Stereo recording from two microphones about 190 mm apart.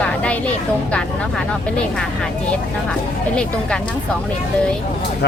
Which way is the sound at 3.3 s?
5° left (ahead or behind).